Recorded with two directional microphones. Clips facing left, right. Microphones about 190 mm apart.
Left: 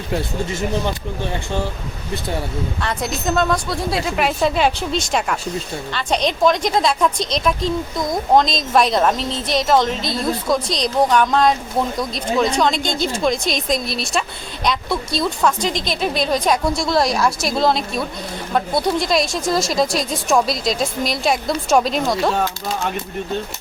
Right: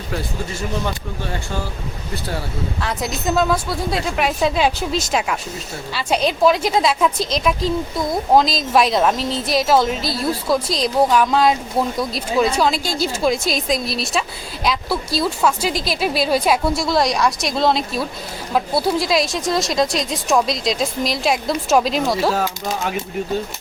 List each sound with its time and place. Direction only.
2.8 s a woman's voice: centre (ahead or behind)